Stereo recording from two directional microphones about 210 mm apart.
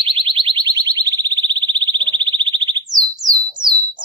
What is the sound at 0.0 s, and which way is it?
Alarm, 25° right (ahead or behind).